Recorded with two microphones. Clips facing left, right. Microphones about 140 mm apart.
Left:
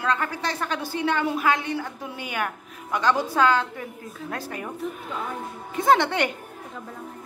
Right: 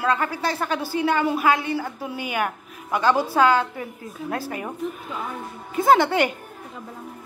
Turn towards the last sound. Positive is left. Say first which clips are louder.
# right 3 dB
turn(degrees=-5)  # may be behind; listen again after turning